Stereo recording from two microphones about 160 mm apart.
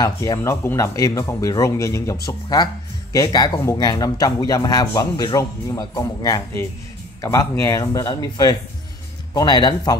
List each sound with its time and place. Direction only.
0.0 s speech: 20° left (ahead or behind)